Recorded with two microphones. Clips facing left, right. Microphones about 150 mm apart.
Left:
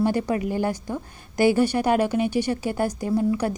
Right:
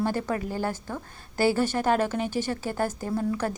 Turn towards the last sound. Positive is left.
turn(degrees=15)  # may be behind; listen again after turning